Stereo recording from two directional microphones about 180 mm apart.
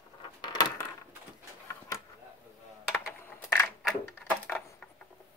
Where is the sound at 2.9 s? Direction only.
15° left (ahead or behind).